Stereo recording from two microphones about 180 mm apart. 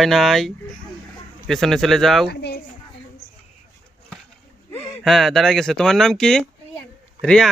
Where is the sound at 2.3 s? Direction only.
65° left (ahead or behind).